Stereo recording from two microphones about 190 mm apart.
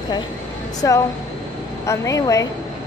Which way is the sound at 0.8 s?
15° left (ahead or behind).